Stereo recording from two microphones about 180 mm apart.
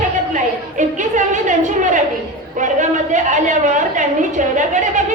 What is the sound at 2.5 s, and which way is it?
A woman's voice, 45° right (ahead or behind).